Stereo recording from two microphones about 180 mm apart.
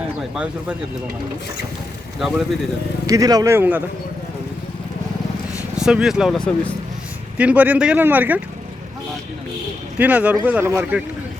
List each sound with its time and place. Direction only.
3.1 s speech: 20° right (ahead or behind)
5.7 s speech: 5° right (ahead or behind)
7.3 s speech: 10° right (ahead or behind)
10.0 s speech: 10° right (ahead or behind)